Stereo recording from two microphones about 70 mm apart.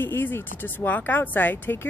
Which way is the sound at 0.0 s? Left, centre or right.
Left.